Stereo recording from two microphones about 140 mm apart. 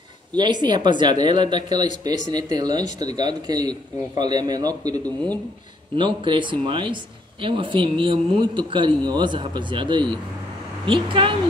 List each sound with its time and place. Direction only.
0.4 s a man's voice: 30° right (ahead or behind)
5.0 s speech: 10° left (ahead or behind)
5.9 s speech: 35° right (ahead or behind)